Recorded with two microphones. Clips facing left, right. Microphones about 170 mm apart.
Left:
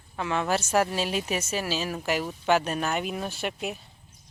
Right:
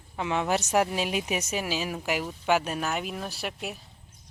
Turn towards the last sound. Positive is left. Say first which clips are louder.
# left 3 dB
turn(degrees=0)  # may be behind; listen again after turning